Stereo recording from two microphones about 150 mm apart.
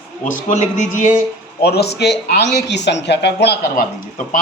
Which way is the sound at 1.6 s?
90° left.